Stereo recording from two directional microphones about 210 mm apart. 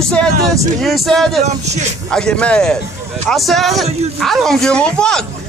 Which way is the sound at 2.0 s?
5° left (ahead or behind).